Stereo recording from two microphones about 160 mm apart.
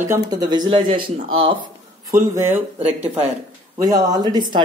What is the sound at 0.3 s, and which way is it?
Speech, 25° right (ahead or behind).